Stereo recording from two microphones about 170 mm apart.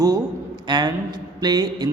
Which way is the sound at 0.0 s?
25° right (ahead or behind).